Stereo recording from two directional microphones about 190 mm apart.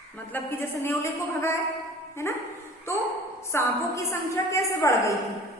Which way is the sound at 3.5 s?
10° left (ahead or behind).